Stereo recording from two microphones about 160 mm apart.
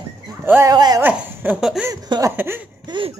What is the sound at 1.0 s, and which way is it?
Speech, 10° right (ahead or behind).